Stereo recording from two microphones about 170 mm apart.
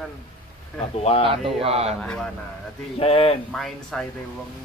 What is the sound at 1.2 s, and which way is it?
Speech, 35° right (ahead or behind).